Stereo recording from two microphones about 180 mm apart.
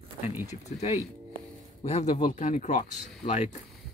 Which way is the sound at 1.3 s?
40° left (ahead or behind).